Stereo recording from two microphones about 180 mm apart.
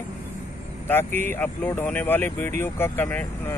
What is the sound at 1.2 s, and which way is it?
Speech, 10° left (ahead or behind).